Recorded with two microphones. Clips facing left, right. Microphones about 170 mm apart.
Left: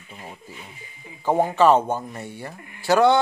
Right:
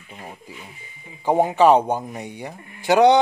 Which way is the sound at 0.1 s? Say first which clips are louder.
Right 2 dB; 15° right (ahead or behind).